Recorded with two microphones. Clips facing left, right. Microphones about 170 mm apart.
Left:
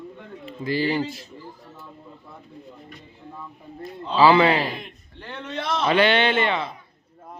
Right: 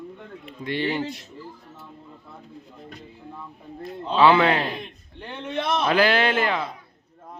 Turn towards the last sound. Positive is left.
turn(degrees=0)  # may be behind; listen again after turning